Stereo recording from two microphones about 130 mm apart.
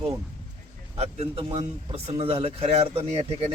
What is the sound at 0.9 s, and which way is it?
A man's voice, 55° right (ahead or behind).